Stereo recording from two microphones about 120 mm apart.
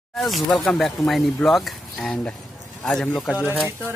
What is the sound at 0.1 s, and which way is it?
A man's voice, centre (ahead or behind).